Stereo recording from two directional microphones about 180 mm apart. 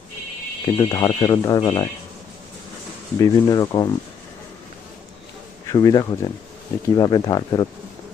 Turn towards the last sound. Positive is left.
turn(degrees=20)  # may be behind; listen again after turning